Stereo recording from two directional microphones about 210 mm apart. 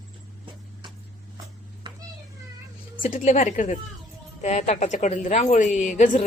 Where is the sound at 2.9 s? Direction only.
40° left (ahead or behind).